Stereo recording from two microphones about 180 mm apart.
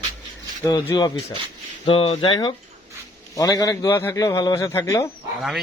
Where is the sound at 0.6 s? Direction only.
20° left (ahead or behind).